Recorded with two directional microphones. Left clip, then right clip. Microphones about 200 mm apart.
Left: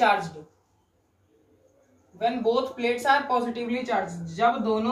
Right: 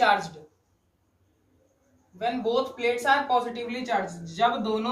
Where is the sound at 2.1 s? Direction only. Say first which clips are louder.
Left 2 dB; 20° right (ahead or behind).